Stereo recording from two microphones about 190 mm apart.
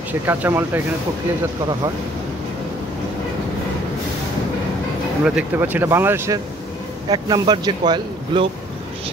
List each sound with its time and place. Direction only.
0.3 s speech: 10° right (ahead or behind)
5.2 s speech: 5° right (ahead or behind); by 8.5 s 20° right (ahead or behind)